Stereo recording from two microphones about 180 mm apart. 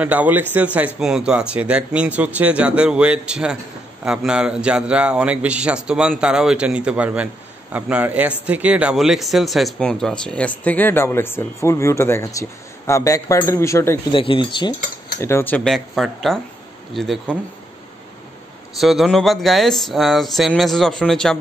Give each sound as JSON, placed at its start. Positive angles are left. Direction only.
{"t": 0.0, "sound": "a man's voice", "side_deg": -10}
{"t": 14.1, "sound": "speech", "side_deg": 30}
{"t": 15.1, "sound": "a man's voice", "side_deg": 15}
{"t": 18.8, "sound": "a man's voice", "side_deg": 0}